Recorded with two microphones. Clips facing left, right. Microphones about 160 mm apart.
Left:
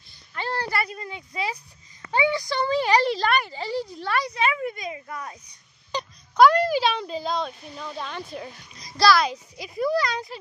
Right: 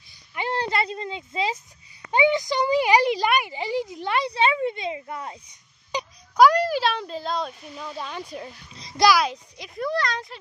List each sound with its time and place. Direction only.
0.1 s a sound: 15° right (ahead or behind)
2.0 s speech: 20° right (ahead or behind)
5.9 s speech: 10° right (ahead or behind)
8.7 s a child's voice: 25° right (ahead or behind)
9.2 s speech: centre (ahead or behind)